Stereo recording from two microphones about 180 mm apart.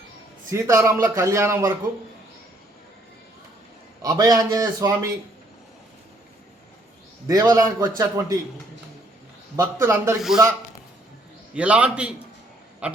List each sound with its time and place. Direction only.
0.5 s a man's voice: 15° right (ahead or behind)
4.0 s a man's voice: 20° right (ahead or behind)
7.3 s a man's voice: 20° right (ahead or behind)
9.6 s a man's voice: 15° right (ahead or behind)
10.2 s a man's voice: centre (ahead or behind)
11.5 s a man's voice: 5° right (ahead or behind)
12.8 s duck: 5° right (ahead or behind)